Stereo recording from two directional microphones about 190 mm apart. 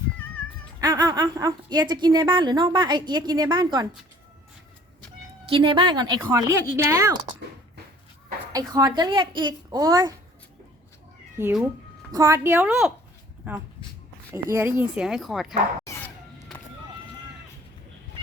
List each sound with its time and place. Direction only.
0.8 s a woman's voice: 20° right (ahead or behind)
5.5 s a woman's voice: 25° right (ahead or behind)
8.5 s a woman's voice: 20° right (ahead or behind)
11.3 s a woman's voice: 10° right (ahead or behind)
15.9 s a sound: 15° left (ahead or behind)